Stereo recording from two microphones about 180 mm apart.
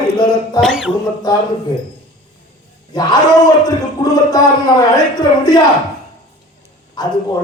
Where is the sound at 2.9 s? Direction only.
25° left (ahead or behind).